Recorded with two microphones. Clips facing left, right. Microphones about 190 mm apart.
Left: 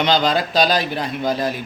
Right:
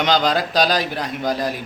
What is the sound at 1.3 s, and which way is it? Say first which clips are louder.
Speech: left 1 dB; 15° right (ahead or behind).